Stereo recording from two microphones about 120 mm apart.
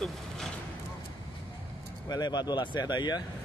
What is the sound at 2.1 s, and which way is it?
A man's voice, 35° left (ahead or behind).